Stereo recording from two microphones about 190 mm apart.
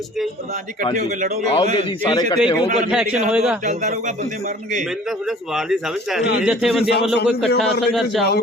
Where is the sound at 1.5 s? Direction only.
25° left (ahead or behind).